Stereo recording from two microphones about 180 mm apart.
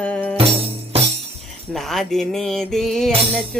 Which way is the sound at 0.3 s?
35° right (ahead or behind).